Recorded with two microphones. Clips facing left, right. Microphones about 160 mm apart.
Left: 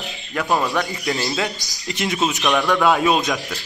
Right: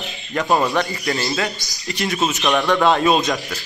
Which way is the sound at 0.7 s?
Centre (ahead or behind).